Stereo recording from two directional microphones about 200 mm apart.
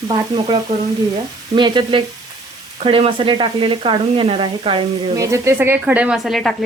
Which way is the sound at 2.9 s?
25° right (ahead or behind).